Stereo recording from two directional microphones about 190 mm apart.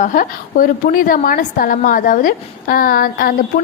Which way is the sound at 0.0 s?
45° left (ahead or behind).